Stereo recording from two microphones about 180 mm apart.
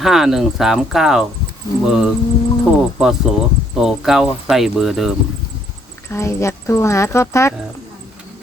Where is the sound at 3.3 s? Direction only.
Centre (ahead or behind).